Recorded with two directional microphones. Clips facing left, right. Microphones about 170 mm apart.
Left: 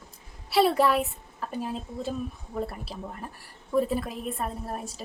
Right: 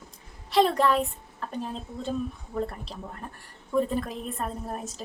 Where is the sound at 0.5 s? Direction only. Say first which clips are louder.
Even; 10° left (ahead or behind).